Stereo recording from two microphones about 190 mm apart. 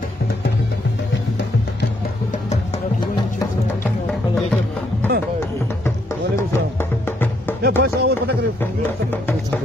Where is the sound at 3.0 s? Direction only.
20° left (ahead or behind).